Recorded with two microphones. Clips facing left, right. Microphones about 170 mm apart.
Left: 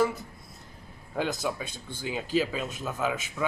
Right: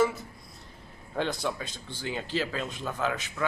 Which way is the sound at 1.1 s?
5° left (ahead or behind).